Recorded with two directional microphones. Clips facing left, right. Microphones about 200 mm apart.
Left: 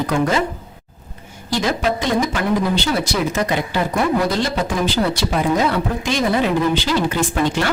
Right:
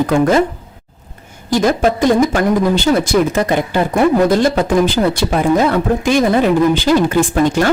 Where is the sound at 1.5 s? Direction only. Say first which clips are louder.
Right 6 dB; 50° right (ahead or behind).